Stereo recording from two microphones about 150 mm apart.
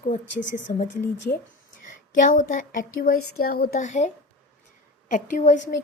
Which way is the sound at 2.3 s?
60° left (ahead or behind).